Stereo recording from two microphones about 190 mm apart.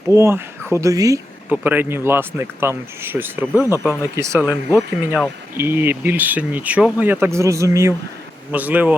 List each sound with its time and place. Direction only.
0.1 s speech: 15° right (ahead or behind)